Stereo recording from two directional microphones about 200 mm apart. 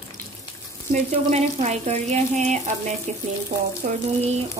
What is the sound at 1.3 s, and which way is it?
Speech, 35° right (ahead or behind).